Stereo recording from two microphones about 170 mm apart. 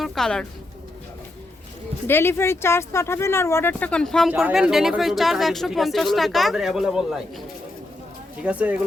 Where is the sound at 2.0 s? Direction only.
15° left (ahead or behind); by 7.2 s 5° right (ahead or behind).